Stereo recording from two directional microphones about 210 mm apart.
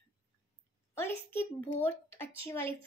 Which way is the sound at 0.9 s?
10° left (ahead or behind).